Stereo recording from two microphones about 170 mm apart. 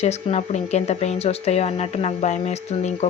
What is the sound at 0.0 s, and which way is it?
A woman's voice, 40° left (ahead or behind).